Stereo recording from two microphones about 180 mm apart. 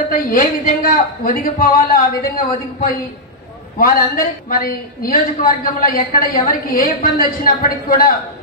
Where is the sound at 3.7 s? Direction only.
50° left (ahead or behind).